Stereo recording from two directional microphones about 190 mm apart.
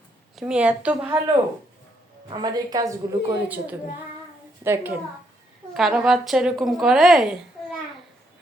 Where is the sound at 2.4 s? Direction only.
20° right (ahead or behind).